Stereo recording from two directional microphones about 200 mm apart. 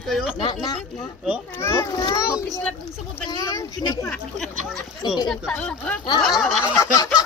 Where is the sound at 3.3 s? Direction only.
15° left (ahead or behind); by 6.6 s centre (ahead or behind).